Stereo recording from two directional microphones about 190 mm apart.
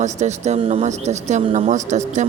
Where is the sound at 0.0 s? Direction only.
35° right (ahead or behind).